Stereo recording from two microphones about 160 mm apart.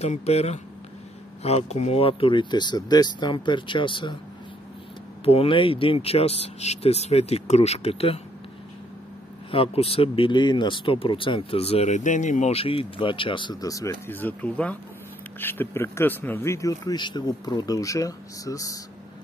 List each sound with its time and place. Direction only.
0.0 s speech: 40° left (ahead or behind)
5.2 s speech: 35° left (ahead or behind)
9.5 s speech: 35° left (ahead or behind); by 18.8 s 20° left (ahead or behind)